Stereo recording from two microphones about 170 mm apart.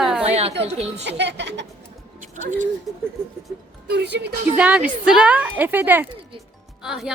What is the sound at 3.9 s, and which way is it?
Speech, 85° right.